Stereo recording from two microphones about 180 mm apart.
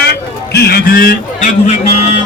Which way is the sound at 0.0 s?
65° left (ahead or behind).